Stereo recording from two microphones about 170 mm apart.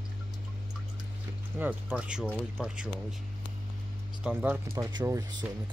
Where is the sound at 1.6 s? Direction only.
5° right (ahead or behind).